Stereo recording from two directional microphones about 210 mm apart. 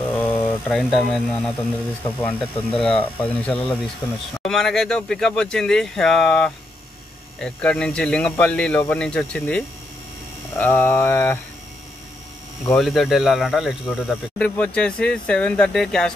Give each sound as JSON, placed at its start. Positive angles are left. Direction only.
{"t": 0.2, "sound": "mantra", "side_deg": 5}
{"t": 2.2, "sound": "speech", "side_deg": 5}
{"t": 12.7, "sound": "speech", "side_deg": 0}